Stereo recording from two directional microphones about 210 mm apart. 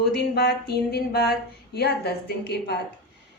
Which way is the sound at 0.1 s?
50° left (ahead or behind).